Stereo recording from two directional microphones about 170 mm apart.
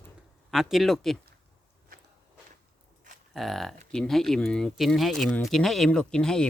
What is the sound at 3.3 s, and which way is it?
Speech, centre (ahead or behind).